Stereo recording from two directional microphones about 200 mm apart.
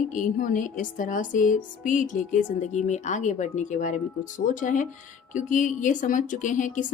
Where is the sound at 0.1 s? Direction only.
40° left (ahead or behind).